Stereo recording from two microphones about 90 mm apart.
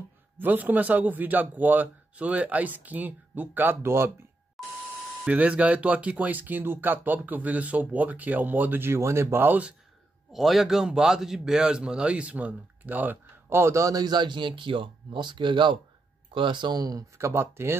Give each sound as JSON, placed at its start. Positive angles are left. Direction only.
{"t": 0.4, "sound": "a man's voice", "side_deg": -20}
{"t": 5.2, "sound": "a man's voice", "side_deg": -15}
{"t": 10.3, "sound": "a man's voice", "side_deg": 0}
{"t": 17.2, "sound": "a man's voice", "side_deg": -30}